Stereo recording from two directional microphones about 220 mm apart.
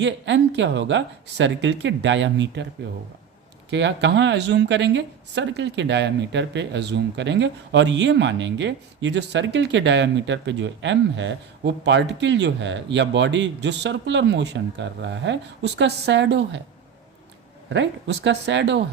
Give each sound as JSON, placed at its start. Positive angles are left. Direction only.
{"t": 0.0, "sound": "speech", "side_deg": -55}
{"t": 3.7, "sound": "speech", "side_deg": -55}
{"t": 17.7, "sound": "speech", "side_deg": -55}